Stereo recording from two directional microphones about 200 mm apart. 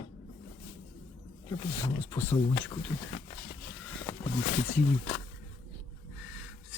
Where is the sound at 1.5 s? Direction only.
15° left (ahead or behind).